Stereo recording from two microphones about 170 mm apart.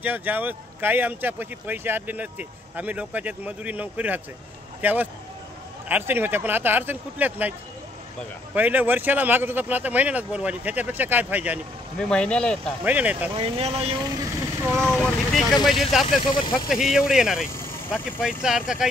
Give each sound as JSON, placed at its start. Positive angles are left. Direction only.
{"t": 0.0, "sound": "speech", "side_deg": -10}
{"t": 8.5, "sound": "speech", "side_deg": -10}
{"t": 12.0, "sound": "speech", "side_deg": 5}
{"t": 12.8, "sound": "speech", "side_deg": -10}
{"t": 13.3, "sound": "speech", "side_deg": -35}
{"t": 14.8, "sound": "speech", "side_deg": 5}
{"t": 16.3, "sound": "speech", "side_deg": 30}
{"t": 16.6, "sound": "speech", "side_deg": -5}
{"t": 17.6, "sound": "speech", "side_deg": 10}
{"t": 18.2, "sound": "speech", "side_deg": -5}